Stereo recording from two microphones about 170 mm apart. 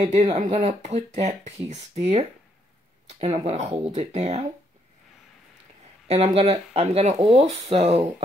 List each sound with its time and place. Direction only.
0.2 s speech: 45° right (ahead or behind)
6.0 s speech: 35° right (ahead or behind)